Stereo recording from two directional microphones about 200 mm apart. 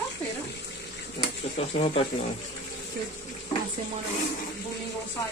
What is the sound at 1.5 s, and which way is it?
Speech, 30° left (ahead or behind).